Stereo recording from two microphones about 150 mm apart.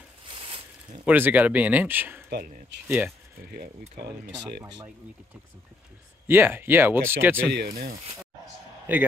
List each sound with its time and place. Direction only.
0.3 s a sound: 35° right (ahead or behind)
1.0 s speech: 10° right (ahead or behind)
2.2 s speech: 85° right
6.2 s speech: 15° right (ahead or behind)
7.5 s speech: 80° right
8.9 s speech: 10° right (ahead or behind)